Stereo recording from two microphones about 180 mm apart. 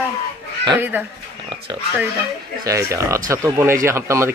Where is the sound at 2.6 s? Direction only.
15° right (ahead or behind).